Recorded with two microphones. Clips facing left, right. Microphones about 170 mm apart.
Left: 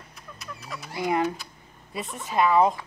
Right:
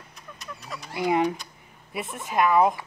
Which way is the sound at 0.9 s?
15° right (ahead or behind).